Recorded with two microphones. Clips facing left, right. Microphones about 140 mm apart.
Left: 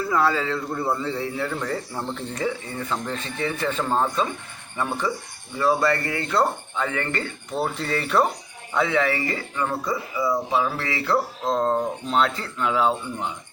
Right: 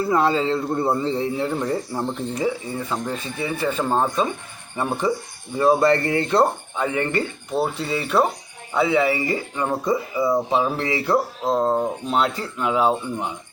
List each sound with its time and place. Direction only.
0.0 s a man's voice: 25° right (ahead or behind)
11.4 s a man's voice: 10° right (ahead or behind)